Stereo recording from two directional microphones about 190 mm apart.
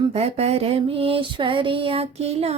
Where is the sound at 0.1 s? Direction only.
35° right (ahead or behind).